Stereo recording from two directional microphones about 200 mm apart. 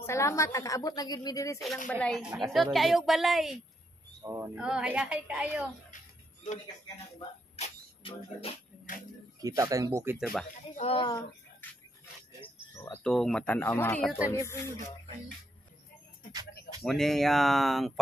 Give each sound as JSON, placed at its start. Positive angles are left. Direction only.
{"t": 0.0, "sound": "a woman's voice", "side_deg": 15}
{"t": 1.9, "sound": "a woman's voice", "side_deg": 5}
{"t": 4.2, "sound": "speech", "side_deg": -15}
{"t": 4.6, "sound": "a woman's voice", "side_deg": -5}
{"t": 7.5, "sound": "a sound", "side_deg": 30}
{"t": 9.4, "sound": "speech", "side_deg": -15}
{"t": 10.8, "sound": "speech", "side_deg": 25}
{"t": 12.7, "sound": "speech", "side_deg": 15}
{"t": 13.0, "sound": "a woman's voice", "side_deg": 0}
{"t": 16.8, "sound": "a woman's voice", "side_deg": 0}